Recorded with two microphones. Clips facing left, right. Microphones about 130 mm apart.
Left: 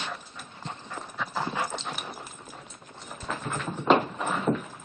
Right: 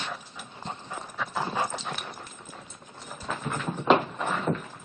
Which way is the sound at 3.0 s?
Centre (ahead or behind).